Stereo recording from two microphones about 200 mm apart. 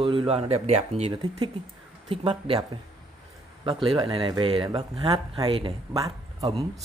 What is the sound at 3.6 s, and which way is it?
A man's voice, 25° right (ahead or behind).